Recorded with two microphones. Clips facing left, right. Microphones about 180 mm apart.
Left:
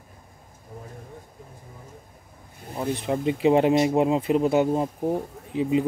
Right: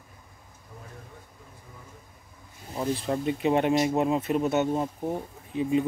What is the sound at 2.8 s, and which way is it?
Speech, 20° left (ahead or behind).